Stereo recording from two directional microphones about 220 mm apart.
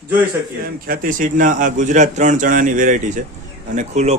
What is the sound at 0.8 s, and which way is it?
A man's voice, 40° right (ahead or behind).